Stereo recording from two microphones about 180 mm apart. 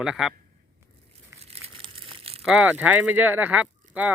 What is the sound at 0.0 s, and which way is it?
Speech, centre (ahead or behind).